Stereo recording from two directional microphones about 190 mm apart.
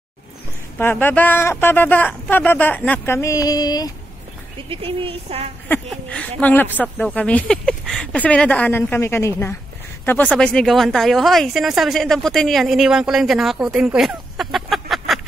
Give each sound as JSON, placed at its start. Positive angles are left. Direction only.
{"t": 0.7, "sound": "speech", "side_deg": 10}
{"t": 4.6, "sound": "a woman's voice", "side_deg": -30}
{"t": 5.7, "sound": "speech", "side_deg": 5}